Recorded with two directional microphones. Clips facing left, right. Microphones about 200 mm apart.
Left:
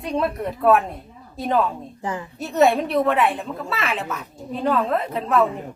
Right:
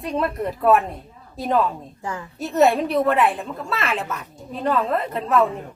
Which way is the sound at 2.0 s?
20° left (ahead or behind).